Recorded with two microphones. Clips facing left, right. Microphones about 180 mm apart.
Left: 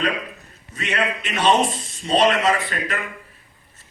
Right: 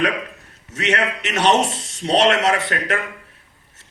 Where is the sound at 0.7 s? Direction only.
75° right (ahead or behind).